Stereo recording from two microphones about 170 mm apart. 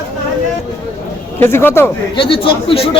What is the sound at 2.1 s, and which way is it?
Speech, 30° left (ahead or behind).